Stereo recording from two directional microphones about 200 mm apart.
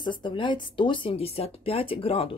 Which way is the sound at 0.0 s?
25° left (ahead or behind).